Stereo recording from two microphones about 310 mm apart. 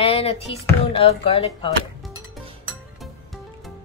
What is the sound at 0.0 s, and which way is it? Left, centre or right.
Speech, centre.